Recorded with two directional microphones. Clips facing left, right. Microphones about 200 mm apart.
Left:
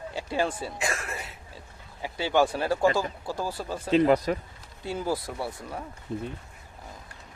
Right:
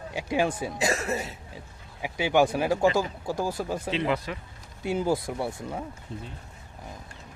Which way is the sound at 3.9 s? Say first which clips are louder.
Left 10 dB; 45° left (ahead or behind).